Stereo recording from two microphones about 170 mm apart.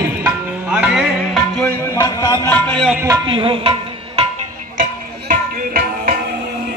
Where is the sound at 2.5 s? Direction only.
10° left (ahead or behind).